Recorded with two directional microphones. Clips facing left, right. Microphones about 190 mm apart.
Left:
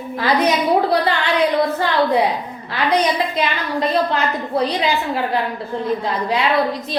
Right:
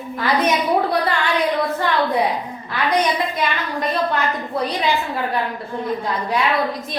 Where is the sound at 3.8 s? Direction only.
30° left (ahead or behind).